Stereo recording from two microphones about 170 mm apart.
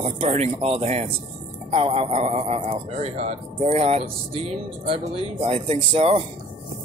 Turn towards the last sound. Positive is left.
turn(degrees=-35)  # may be behind; listen again after turning